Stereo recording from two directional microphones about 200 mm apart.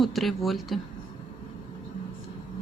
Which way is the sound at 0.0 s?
Centre (ahead or behind).